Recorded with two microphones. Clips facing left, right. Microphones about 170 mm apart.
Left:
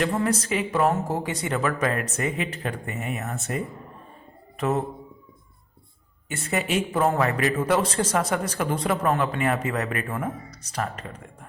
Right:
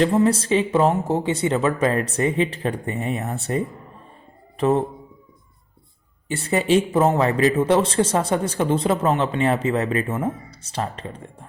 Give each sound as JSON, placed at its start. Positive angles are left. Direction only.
{"t": 0.0, "sound": "a man's voice", "side_deg": -25}
{"t": 6.2, "sound": "a man's voice", "side_deg": -30}